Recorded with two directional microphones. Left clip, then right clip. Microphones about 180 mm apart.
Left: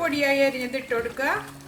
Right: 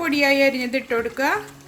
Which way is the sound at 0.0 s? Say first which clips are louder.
Right 4 dB; 50° right (ahead or behind).